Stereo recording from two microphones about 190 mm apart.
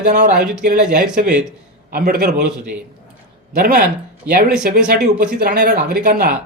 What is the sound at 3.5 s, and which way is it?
Speech, 50° right (ahead or behind).